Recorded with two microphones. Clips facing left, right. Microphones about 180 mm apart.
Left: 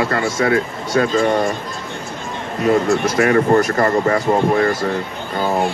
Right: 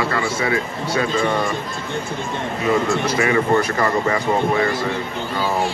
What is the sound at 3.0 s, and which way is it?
Speech, 45° left (ahead or behind).